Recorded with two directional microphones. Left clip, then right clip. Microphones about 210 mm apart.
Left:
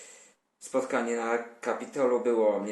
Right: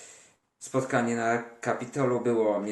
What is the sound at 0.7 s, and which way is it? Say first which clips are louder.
Speech: right 1 dB; 10° right (ahead or behind).